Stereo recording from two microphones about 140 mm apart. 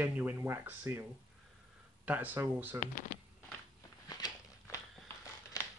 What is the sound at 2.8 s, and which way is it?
Speech, 70° left (ahead or behind).